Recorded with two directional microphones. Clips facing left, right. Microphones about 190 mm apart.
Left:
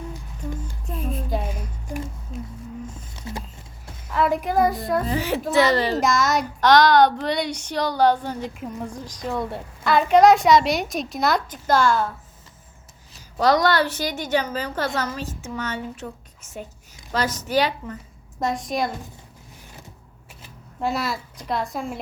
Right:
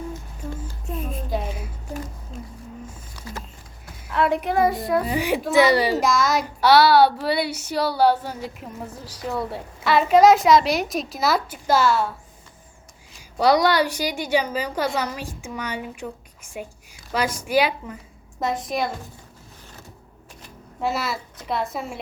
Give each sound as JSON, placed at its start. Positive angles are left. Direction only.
{"t": 0.1, "sound": "a sound", "side_deg": 15}
{"t": 0.9, "sound": "a sound", "side_deg": -5}
{"t": 3.2, "sound": "a sound", "side_deg": 25}
{"t": 4.1, "sound": "child singing", "side_deg": 0}
{"t": 5.1, "sound": "a woman's voice", "side_deg": -15}
{"t": 6.0, "sound": "child singing", "side_deg": 0}
{"t": 13.3, "sound": "a woman's voice", "side_deg": -10}
{"t": 18.3, "sound": "child singing", "side_deg": 0}
{"t": 20.4, "sound": "speech", "side_deg": 0}